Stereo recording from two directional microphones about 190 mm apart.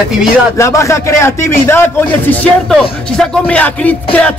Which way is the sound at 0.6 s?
15° left (ahead or behind).